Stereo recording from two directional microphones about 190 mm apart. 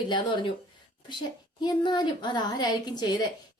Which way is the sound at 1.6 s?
25° left (ahead or behind).